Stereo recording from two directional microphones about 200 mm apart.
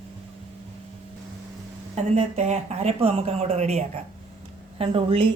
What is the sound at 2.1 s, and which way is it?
A woman's voice, 35° right (ahead or behind).